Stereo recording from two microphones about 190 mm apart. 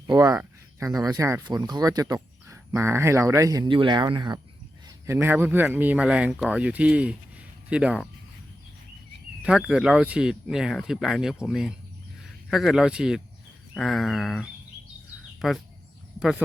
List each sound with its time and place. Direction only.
0.1 s speech: 20° right (ahead or behind)
5.0 s speech: 10° right (ahead or behind)
9.4 s speech: 5° right (ahead or behind)